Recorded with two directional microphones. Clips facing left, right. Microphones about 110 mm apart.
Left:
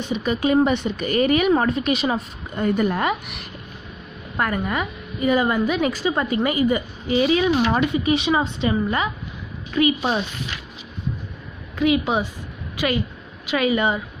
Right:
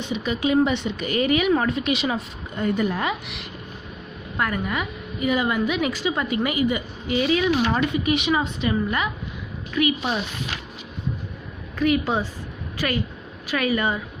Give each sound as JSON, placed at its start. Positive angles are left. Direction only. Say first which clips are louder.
{"t": 0.0, "sound": "a woman's voice", "louder": "left 2 dB", "side_deg": 45}
{"t": 11.8, "sound": "a woman's voice", "louder": "left 2 dB", "side_deg": 20}